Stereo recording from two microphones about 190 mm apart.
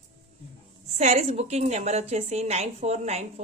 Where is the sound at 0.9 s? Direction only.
35° right (ahead or behind).